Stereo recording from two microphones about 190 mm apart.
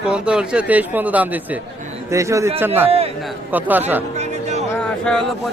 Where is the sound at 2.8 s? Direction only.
30° right (ahead or behind).